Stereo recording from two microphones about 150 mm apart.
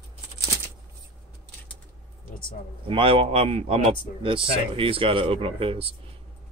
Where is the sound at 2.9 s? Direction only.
35° right (ahead or behind).